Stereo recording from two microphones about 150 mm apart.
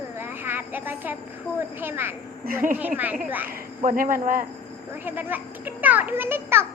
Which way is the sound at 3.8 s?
60° right (ahead or behind).